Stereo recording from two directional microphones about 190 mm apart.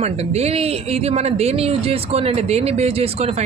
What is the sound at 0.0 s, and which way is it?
Speech, 35° right (ahead or behind).